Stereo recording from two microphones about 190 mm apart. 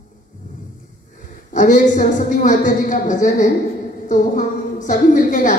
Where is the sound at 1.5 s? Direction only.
40° left (ahead or behind).